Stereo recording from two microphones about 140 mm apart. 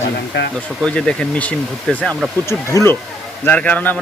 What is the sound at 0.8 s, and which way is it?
Speech, 5° left (ahead or behind).